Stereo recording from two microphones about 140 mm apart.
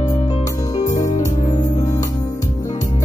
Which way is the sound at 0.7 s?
25° left (ahead or behind).